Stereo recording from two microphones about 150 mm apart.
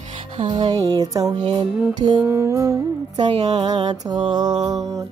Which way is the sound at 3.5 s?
30° right (ahead or behind).